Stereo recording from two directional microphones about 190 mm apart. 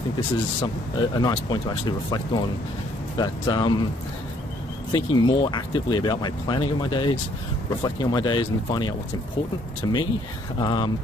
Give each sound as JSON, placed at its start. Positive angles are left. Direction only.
{"t": 0.6, "sound": "speech", "side_deg": 25}
{"t": 4.9, "sound": "speech", "side_deg": 25}